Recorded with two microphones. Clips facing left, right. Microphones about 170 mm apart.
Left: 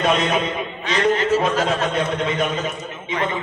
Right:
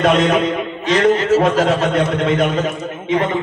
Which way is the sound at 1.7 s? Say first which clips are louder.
Right 5 dB; 70° right (ahead or behind).